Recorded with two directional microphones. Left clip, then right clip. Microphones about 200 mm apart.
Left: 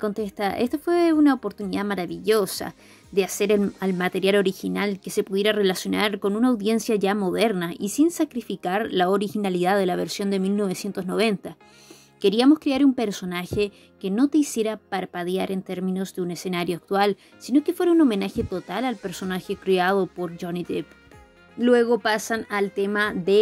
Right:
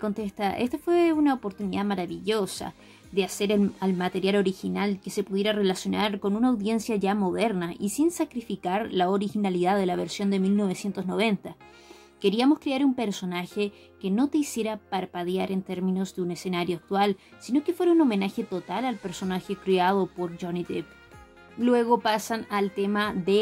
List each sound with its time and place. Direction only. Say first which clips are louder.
0.0 s speech: left 3 dB; 20° left (ahead or behind)